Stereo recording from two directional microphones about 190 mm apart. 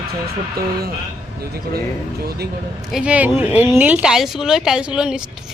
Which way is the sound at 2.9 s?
5° right (ahead or behind).